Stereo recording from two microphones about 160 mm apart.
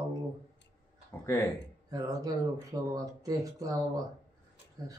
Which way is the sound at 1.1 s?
15° left (ahead or behind).